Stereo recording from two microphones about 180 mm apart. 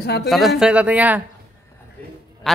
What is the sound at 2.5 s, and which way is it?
Speech, centre (ahead or behind).